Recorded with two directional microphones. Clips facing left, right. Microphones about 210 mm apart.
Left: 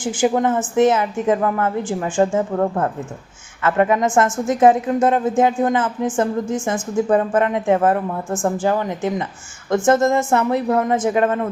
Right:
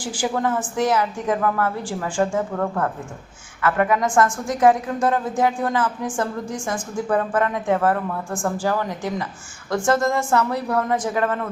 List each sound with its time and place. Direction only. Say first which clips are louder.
0.0 s a woman's voice: left 6 dB; 20° left (ahead or behind)